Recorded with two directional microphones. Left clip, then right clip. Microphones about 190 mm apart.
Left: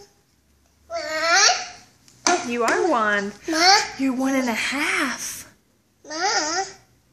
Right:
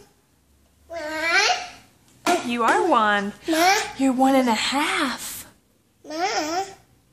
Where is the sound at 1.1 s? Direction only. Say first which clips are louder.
Left 3 dB; 10° right (ahead or behind).